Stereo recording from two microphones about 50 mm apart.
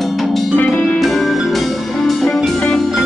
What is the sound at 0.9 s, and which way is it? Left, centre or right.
Music, centre.